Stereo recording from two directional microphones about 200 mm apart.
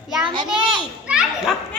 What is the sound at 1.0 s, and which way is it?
Children playing, 5° right (ahead or behind).